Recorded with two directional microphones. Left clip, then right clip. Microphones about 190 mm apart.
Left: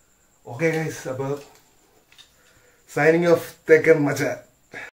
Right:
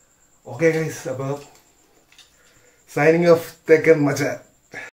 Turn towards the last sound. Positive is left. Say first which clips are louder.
# right 1 dB
turn(degrees=0)  # may be behind; listen again after turning